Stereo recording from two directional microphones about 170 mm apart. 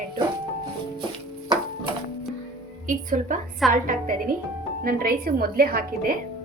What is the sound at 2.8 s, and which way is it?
A woman's voice, 50° right (ahead or behind).